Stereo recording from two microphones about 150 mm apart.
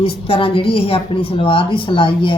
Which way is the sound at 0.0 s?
40° left (ahead or behind).